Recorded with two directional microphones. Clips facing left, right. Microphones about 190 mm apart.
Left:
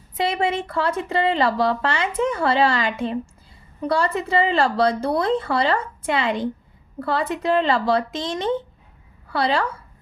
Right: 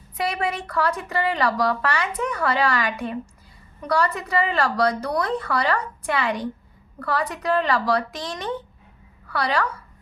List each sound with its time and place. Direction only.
0.2 s speech: 25° left (ahead or behind)